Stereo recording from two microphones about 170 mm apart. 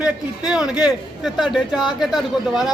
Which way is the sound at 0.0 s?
5° right (ahead or behind).